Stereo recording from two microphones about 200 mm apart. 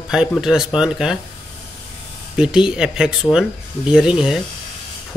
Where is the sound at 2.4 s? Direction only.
5° right (ahead or behind).